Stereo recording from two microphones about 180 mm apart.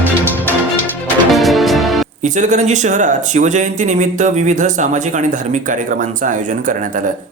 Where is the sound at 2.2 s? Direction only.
45° right (ahead or behind).